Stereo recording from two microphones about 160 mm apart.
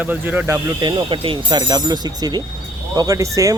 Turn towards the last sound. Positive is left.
turn(degrees=-20)  # may be behind; listen again after turning